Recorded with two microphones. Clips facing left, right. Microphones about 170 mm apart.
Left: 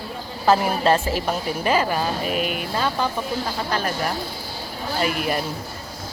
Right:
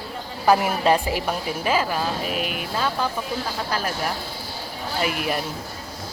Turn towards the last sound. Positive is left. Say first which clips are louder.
# left 2 dB
turn(degrees=0)  # may be behind; listen again after turning